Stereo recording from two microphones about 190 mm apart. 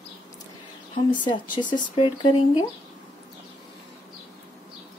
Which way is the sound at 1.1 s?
25° left (ahead or behind).